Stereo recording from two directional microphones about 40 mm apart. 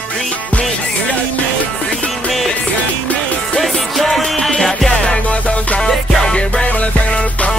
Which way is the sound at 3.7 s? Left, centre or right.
Centre.